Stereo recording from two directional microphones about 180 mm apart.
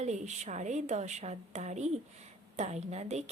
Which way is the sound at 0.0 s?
40° right (ahead or behind).